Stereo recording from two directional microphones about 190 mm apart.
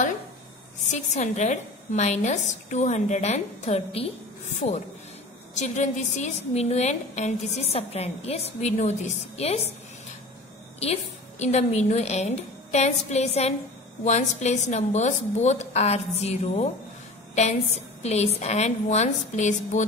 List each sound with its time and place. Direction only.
0.9 s a woman's voice: 35° left (ahead or behind)
10.8 s a woman's voice: 35° left (ahead or behind)
18.0 s a woman's voice: 35° left (ahead or behind)